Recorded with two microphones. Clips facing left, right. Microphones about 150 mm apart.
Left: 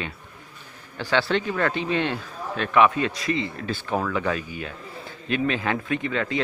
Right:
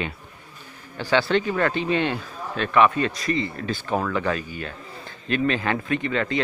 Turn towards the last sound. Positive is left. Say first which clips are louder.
# right 2 dB
turn(degrees=5)  # may be behind; listen again after turning